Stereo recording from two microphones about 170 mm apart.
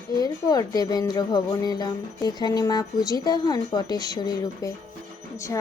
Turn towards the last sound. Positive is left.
turn(degrees=20)  # may be behind; listen again after turning